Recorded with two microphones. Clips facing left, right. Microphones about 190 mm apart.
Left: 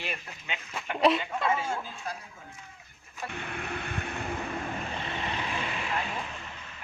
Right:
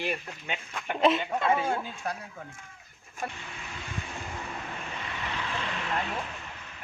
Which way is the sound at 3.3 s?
60° left (ahead or behind).